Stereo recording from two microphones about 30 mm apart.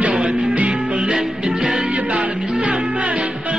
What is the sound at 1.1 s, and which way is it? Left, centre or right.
Music, right.